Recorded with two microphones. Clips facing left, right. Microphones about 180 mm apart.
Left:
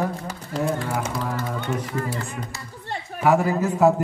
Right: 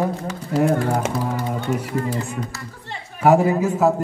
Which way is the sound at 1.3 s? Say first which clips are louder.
Right 3 dB; 20° right (ahead or behind).